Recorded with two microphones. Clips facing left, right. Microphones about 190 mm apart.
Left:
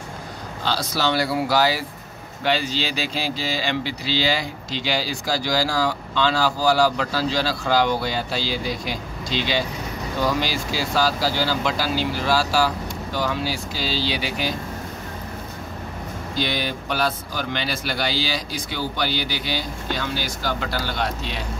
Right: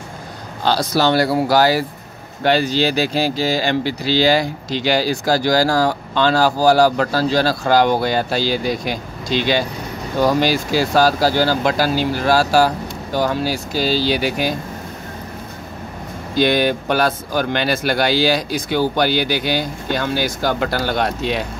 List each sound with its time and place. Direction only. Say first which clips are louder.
0.9 s speech: right 6 dB; 55° right (ahead or behind)
16.3 s speech: right 10 dB; 55° right (ahead or behind)